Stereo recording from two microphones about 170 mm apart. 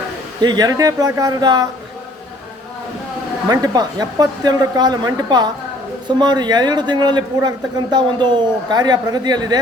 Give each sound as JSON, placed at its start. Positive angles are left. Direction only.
{"t": 0.4, "sound": "a man's voice", "side_deg": -20}
{"t": 3.5, "sound": "a man's voice", "side_deg": -20}